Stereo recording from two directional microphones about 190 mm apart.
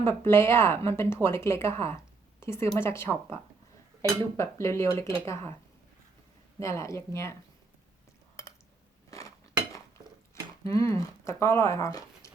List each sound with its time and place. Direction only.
0.0 s a woman's voice: 15° left (ahead or behind)
4.4 s a woman's voice: 15° left (ahead or behind)
6.6 s a woman's voice: 15° left (ahead or behind)
9.1 s cutlery: 15° left (ahead or behind)
10.6 s speech: 15° left (ahead or behind)